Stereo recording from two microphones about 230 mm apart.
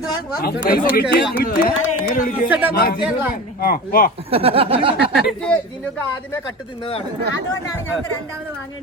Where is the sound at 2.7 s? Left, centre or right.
Left.